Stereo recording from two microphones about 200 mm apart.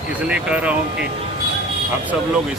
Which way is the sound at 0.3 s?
5° right (ahead or behind).